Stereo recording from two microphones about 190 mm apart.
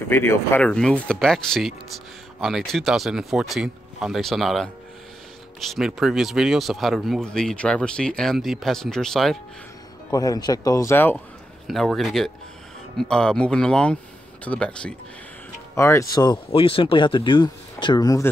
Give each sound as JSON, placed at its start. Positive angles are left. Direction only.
{"t": 0.1, "sound": "speech", "side_deg": 15}
{"t": 10.1, "sound": "speech", "side_deg": 20}